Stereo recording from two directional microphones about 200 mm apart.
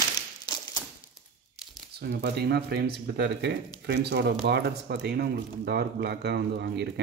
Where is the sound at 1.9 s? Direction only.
55° right (ahead or behind).